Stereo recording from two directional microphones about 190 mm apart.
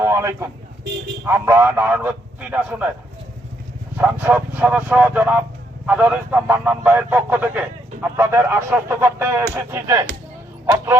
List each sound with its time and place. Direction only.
0.0 s a sound: 15° right (ahead or behind)
1.3 s speech: 15° right (ahead or behind)
3.9 s speech: 10° right (ahead or behind)